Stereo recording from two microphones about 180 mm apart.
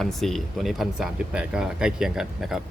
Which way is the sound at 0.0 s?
Centre (ahead or behind).